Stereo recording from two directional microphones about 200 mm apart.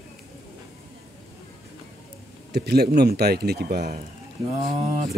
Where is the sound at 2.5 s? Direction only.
55° right (ahead or behind).